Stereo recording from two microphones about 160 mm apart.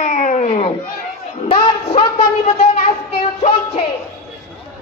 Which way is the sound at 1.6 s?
30° left (ahead or behind).